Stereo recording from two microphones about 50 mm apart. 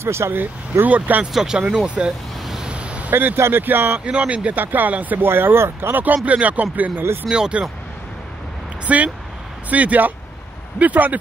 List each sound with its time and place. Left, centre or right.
0.0 s speech: right
0.3 s speech: right
0.8 s speech: right
1.3 s speech: centre
2.4 s waves: centre
2.7 s vehicle: right
3.1 s speech: right
3.3 s speech: right
3.6 s speech: right
4.0 s speech: right
5.2 s speech: right
6.2 s speech: right
7.2 s speech: centre
8.8 s speech: right